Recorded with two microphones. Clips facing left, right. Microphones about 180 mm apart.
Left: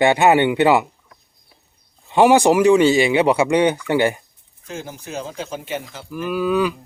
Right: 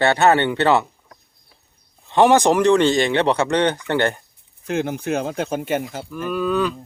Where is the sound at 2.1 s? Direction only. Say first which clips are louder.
Left 1 dB; 10° left (ahead or behind).